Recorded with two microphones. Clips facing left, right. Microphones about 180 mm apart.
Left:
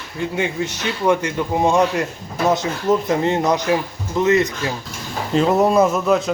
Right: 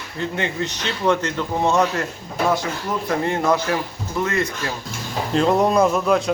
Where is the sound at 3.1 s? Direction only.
20° left (ahead or behind).